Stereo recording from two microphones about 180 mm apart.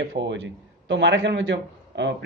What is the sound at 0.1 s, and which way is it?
A man's voice, 85° right.